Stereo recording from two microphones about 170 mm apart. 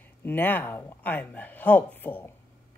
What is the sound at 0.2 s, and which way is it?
Speech, 10° left (ahead or behind).